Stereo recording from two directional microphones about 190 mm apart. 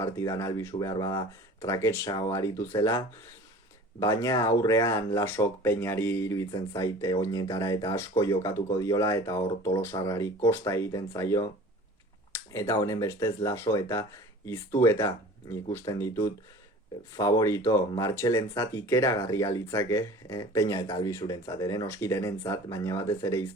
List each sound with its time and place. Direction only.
0.0 s speech: 15° left (ahead or behind)
4.0 s speech: 15° left (ahead or behind)
12.5 s speech: 15° left (ahead or behind)